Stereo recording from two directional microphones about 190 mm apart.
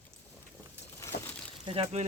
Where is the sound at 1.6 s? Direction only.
30° right (ahead or behind).